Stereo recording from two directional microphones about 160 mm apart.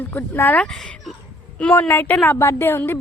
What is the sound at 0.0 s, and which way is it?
A woman's voice, 15° left (ahead or behind).